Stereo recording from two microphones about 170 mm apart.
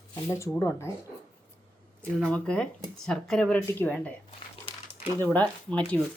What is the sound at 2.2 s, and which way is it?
Speech, 5° left (ahead or behind).